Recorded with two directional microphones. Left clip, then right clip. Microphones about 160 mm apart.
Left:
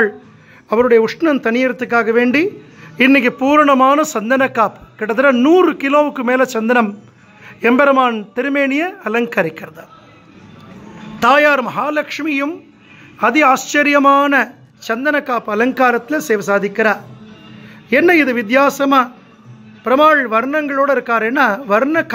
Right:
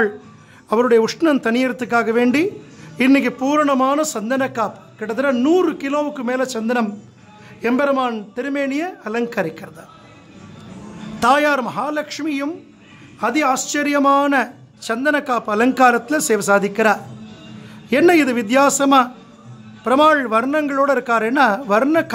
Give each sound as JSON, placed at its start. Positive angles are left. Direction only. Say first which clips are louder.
{"t": 0.7, "sound": "speech", "louder": "left 3 dB", "side_deg": 0}
{"t": 3.0, "sound": "a man's voice", "louder": "left 4 dB", "side_deg": 15}
{"t": 11.1, "sound": "speech", "louder": "left 4 dB", "side_deg": 5}